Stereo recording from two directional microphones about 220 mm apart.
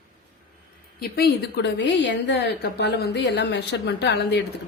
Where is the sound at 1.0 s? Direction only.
45° left (ahead or behind).